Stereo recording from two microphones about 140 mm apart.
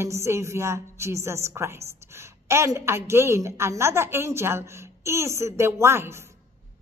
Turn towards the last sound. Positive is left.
turn(degrees=-20)  # may be behind; listen again after turning